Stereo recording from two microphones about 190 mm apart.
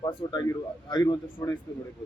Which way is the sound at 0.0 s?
20° left (ahead or behind).